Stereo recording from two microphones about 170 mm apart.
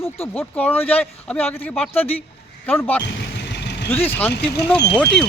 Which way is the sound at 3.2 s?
85° left.